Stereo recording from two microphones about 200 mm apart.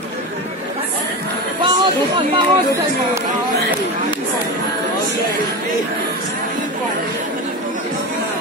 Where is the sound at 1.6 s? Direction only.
25° right (ahead or behind).